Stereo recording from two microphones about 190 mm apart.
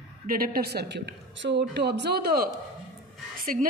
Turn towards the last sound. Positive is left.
turn(degrees=-50)  # may be behind; listen again after turning